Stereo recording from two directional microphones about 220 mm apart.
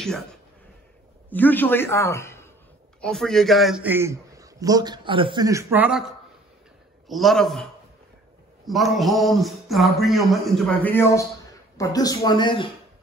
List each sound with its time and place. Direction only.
1.3 s a man's voice: 10° left (ahead or behind)
8.6 s a man's voice: centre (ahead or behind); by 12.6 s 20° left (ahead or behind)